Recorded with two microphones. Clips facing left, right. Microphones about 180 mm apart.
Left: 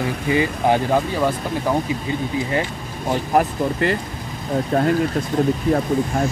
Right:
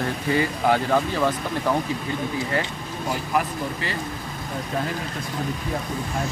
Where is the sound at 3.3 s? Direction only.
50° left (ahead or behind).